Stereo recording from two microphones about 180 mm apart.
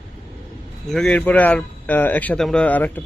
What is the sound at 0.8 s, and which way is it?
Speech, 5° left (ahead or behind).